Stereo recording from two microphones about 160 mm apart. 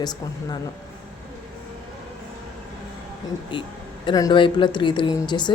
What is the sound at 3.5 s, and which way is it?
A woman's voice, 30° left (ahead or behind).